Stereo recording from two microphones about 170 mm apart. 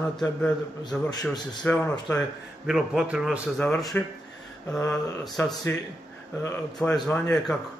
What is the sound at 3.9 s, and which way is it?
Speech, 10° left (ahead or behind).